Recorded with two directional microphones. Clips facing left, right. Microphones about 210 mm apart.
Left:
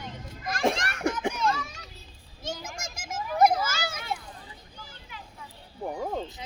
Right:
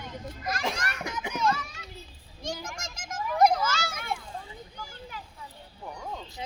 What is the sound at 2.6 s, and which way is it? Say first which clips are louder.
Children playing: left 1 dB; 5° left (ahead or behind).